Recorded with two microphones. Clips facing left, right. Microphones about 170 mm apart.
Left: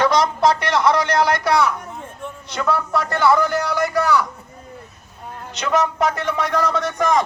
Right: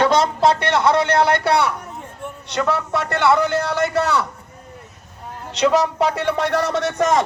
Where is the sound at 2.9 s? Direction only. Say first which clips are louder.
Left 1 dB; 25° right (ahead or behind).